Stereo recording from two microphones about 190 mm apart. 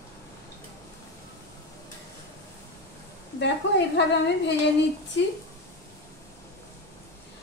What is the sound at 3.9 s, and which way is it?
Speech, 65° left (ahead or behind).